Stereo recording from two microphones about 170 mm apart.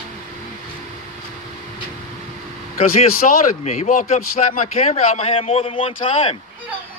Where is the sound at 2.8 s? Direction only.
50° left (ahead or behind); by 5.9 s 35° left (ahead or behind).